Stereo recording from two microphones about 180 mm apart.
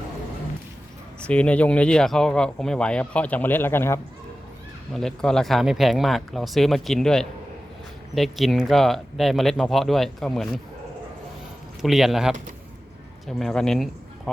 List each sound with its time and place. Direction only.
1.3 s speech: 5° left (ahead or behind)
4.9 s speech: 5° left (ahead or behind)
11.8 s speech: centre (ahead or behind)